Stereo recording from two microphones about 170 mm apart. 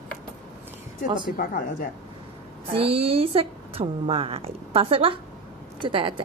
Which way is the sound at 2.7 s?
35° right (ahead or behind).